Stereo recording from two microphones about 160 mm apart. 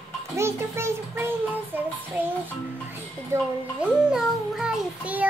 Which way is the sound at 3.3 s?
5° right (ahead or behind).